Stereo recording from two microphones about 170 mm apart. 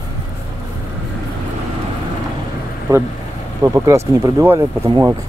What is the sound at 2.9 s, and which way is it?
Speech, 20° right (ahead or behind).